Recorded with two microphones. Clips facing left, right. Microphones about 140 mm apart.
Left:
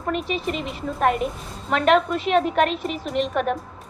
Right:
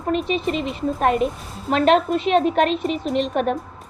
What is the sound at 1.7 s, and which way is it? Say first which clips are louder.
Speech: right 2 dB; 30° right (ahead or behind).